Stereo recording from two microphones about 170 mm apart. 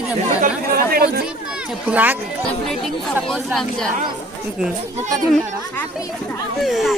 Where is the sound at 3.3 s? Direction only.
Centre (ahead or behind).